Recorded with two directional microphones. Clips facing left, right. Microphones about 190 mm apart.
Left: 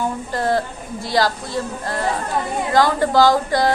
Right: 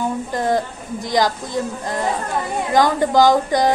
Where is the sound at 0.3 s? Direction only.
15° right (ahead or behind).